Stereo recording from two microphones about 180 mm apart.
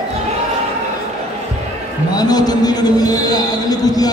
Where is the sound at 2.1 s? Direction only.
20° left (ahead or behind).